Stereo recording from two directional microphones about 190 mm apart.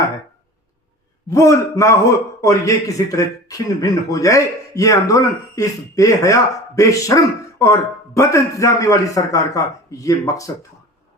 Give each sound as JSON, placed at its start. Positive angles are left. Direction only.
{"t": 1.3, "sound": "a man's voice", "side_deg": 15}